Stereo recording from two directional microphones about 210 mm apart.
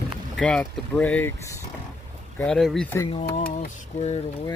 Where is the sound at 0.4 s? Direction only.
5° left (ahead or behind).